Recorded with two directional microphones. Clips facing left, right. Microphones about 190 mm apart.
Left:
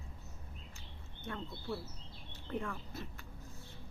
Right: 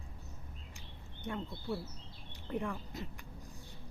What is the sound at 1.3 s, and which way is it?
Speech, 15° right (ahead or behind).